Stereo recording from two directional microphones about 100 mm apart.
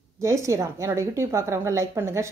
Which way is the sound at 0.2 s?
30° right (ahead or behind).